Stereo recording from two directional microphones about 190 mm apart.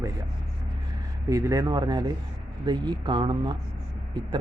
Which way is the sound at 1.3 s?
20° right (ahead or behind).